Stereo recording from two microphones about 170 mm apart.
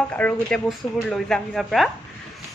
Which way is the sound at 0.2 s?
5° left (ahead or behind).